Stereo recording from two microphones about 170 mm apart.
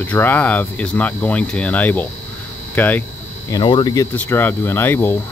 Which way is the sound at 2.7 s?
10° left (ahead or behind).